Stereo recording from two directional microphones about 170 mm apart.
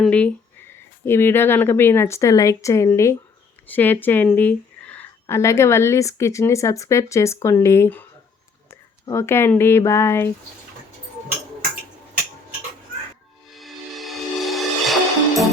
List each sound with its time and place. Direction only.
0.0 s speech: 10° left (ahead or behind)
13.5 s music: centre (ahead or behind)